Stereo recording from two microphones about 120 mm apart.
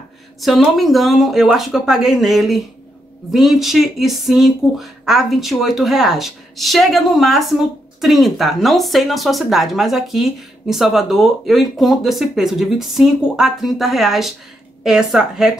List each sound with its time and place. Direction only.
0.4 s speech: centre (ahead or behind)